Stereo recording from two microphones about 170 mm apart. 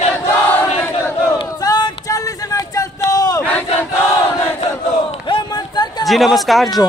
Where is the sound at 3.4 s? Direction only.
10° left (ahead or behind).